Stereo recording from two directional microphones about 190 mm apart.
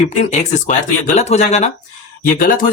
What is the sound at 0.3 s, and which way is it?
Speech, 35° left (ahead or behind).